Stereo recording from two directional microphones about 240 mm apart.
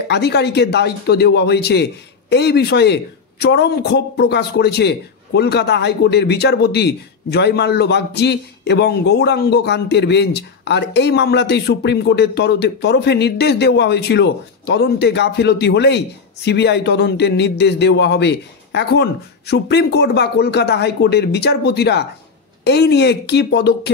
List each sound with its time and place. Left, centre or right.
0.1 s speech: left